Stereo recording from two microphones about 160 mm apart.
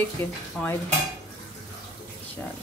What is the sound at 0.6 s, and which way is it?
Speech, 5° left (ahead or behind).